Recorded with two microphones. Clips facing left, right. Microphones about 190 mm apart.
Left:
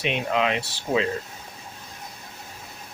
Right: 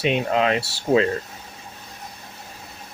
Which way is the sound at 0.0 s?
40° right (ahead or behind).